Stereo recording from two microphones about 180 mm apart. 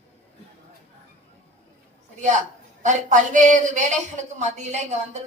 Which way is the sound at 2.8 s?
45° right (ahead or behind).